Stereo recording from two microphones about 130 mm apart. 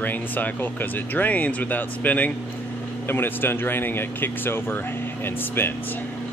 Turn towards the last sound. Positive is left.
turn(degrees=15)  # may be behind; listen again after turning